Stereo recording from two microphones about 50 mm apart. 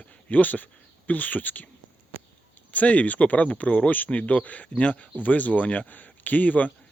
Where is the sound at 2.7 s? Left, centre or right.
Left.